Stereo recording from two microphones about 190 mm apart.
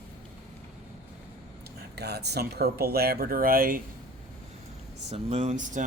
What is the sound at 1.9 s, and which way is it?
Speech, 60° right (ahead or behind).